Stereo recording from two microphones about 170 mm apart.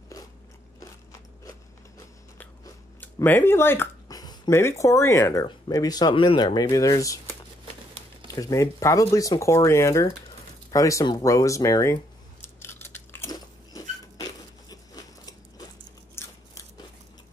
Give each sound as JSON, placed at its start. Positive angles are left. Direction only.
{"t": 2.3, "sound": "speech", "side_deg": 15}
{"t": 8.4, "sound": "speech", "side_deg": 20}
{"t": 10.7, "sound": "a sound", "side_deg": 20}
{"t": 16.2, "sound": "scissors", "side_deg": 15}